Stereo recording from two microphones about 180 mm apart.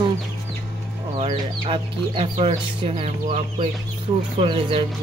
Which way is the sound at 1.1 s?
30° right (ahead or behind).